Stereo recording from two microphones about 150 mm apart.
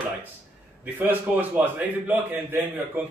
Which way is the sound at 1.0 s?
10° right (ahead or behind).